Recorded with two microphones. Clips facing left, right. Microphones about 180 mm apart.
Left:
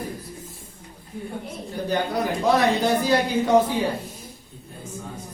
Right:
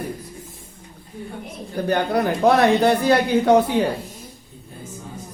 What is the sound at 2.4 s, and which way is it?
A man's voice, 60° right (ahead or behind).